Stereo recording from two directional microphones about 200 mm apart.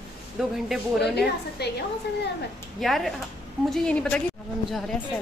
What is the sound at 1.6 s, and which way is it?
Speech, 55° left (ahead or behind).